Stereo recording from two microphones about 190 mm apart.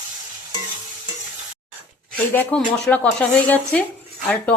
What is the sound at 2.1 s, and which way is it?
Speech, 10° left (ahead or behind).